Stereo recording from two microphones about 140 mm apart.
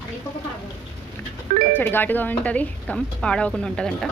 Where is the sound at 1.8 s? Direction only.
15° left (ahead or behind).